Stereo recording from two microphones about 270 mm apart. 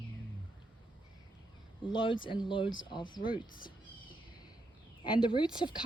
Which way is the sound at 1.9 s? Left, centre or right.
Centre.